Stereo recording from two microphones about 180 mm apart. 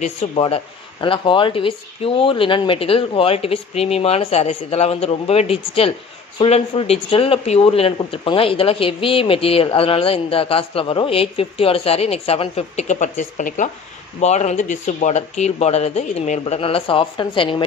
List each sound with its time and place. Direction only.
0.0 s speech: 35° left (ahead or behind)